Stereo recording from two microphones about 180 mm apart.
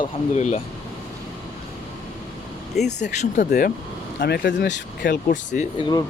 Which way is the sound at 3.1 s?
40° left (ahead or behind).